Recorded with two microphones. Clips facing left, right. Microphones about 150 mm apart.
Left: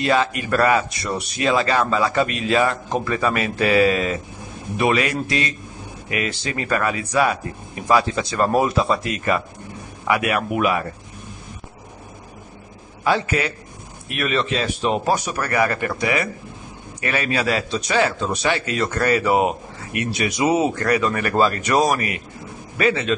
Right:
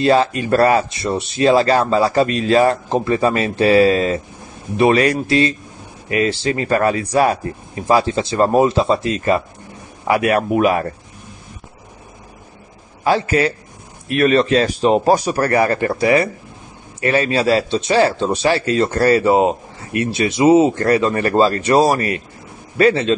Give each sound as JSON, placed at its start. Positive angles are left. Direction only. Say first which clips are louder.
{"t": 0.0, "sound": "speech", "louder": "right 5 dB", "side_deg": -35}
{"t": 13.0, "sound": "speech", "louder": "right 5 dB", "side_deg": -35}